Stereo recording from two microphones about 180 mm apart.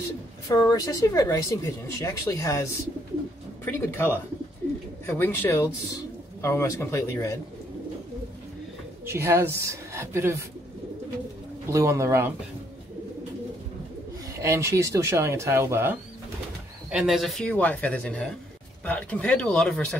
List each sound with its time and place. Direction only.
0.5 s speech: 20° left (ahead or behind)
9.0 s speech: 15° right (ahead or behind)
11.6 s speech: 15° right (ahead or behind)
14.4 s speech: 15° right (ahead or behind)
16.9 s speech: centre (ahead or behind)